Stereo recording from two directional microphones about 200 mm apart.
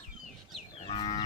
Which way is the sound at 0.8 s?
25° left (ahead or behind).